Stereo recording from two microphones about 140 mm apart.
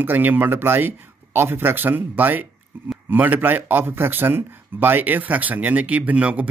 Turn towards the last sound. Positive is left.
turn(degrees=-10)  # may be behind; listen again after turning